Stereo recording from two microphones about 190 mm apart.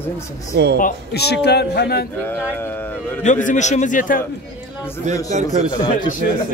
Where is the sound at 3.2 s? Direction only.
40° left (ahead or behind).